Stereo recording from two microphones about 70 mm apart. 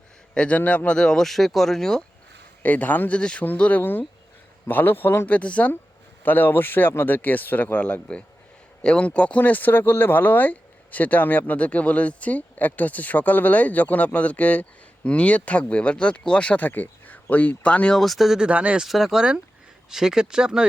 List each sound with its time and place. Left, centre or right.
0.3 s speech: centre
2.6 s speech: left
3.2 s speech: centre
3.6 s speech: left
17.9 s speech: centre
18.4 s speech: centre
18.8 s speech: centre